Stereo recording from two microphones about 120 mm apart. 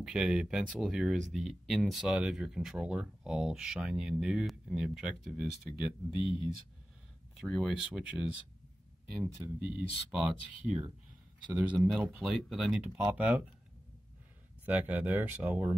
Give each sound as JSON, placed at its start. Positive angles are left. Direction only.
{"t": 0.0, "sound": "speech", "side_deg": -5}
{"t": 7.3, "sound": "speech", "side_deg": 0}
{"t": 12.2, "sound": "speech", "side_deg": 0}
{"t": 14.8, "sound": "speech", "side_deg": -15}